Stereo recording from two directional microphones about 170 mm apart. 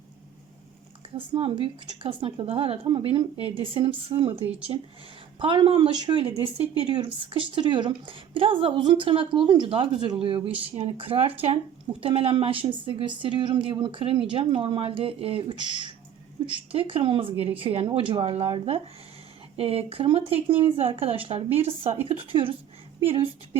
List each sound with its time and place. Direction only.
1.1 s speech: 30° right (ahead or behind)